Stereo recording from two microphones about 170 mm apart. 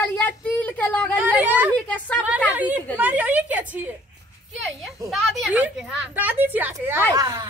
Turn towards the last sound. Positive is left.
turn(degrees=-20)  # may be behind; listen again after turning